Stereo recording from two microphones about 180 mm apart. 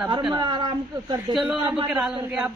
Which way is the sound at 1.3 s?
10° right (ahead or behind).